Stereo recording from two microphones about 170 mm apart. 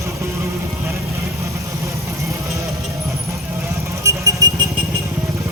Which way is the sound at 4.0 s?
20° right (ahead or behind).